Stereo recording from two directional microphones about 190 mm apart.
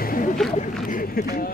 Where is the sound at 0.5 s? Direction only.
45° left (ahead or behind).